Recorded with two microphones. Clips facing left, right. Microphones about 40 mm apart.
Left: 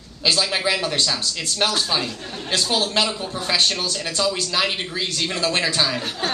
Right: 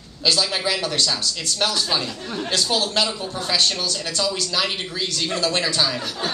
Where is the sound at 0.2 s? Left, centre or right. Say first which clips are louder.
Left 1 dB; centre.